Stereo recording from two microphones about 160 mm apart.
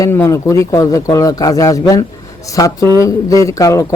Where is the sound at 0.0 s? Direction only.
20° left (ahead or behind).